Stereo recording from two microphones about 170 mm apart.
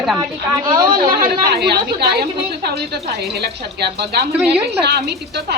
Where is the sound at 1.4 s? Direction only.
70° right (ahead or behind).